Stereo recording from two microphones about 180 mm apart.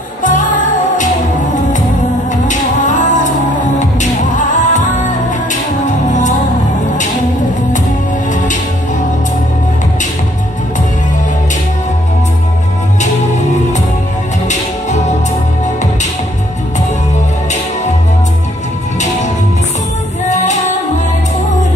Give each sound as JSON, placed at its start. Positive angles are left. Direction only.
{"t": 0.2, "sound": "music", "side_deg": 45}
{"t": 14.5, "sound": "music", "side_deg": 40}